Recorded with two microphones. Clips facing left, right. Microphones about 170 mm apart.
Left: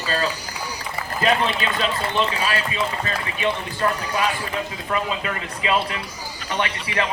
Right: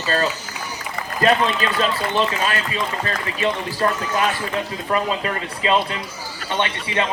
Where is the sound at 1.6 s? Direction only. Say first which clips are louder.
Right 3 dB; 40° right (ahead or behind).